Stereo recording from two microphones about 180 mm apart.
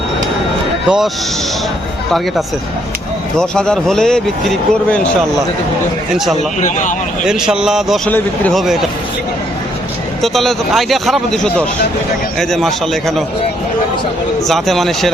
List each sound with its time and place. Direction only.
0.9 s speech: 5° right (ahead or behind)
3.3 s speech: 5° left (ahead or behind)
6.6 s speech: 45° left (ahead or behind)
7.3 s speech: 5° right (ahead or behind)
10.2 s speech: centre (ahead or behind)
14.4 s speech: centre (ahead or behind)